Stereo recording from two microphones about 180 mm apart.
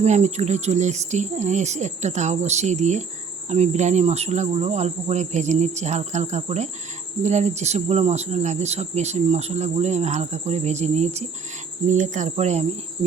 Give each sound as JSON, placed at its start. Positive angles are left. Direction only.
{"t": 0.0, "sound": "speech", "side_deg": -40}